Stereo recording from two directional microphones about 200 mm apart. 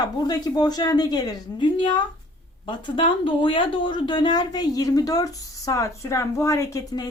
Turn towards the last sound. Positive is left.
turn(degrees=15)  # may be behind; listen again after turning